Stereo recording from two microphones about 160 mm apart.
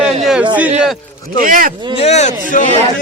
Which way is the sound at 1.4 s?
60° right (ahead or behind).